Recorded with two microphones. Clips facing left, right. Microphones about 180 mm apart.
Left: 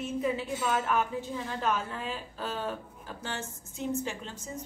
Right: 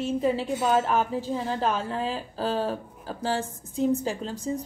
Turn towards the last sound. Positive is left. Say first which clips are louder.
# right 6 dB
turn(degrees=-35)  # may be behind; listen again after turning